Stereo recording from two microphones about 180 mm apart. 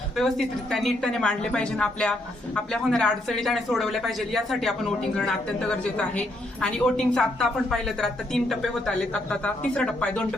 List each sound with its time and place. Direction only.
0.2 s a woman's voice: centre (ahead or behind)